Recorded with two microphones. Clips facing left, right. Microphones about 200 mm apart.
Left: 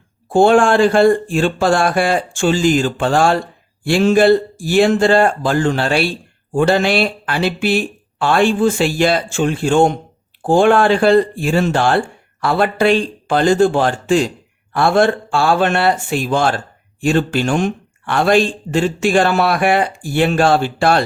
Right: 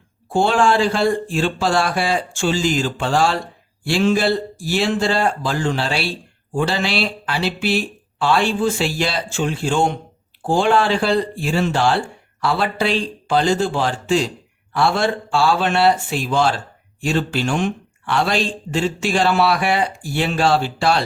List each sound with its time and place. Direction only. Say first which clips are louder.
0.3 s speech: left 6 dB; 50° left (ahead or behind)